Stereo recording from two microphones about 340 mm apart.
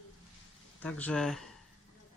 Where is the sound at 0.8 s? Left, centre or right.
Centre.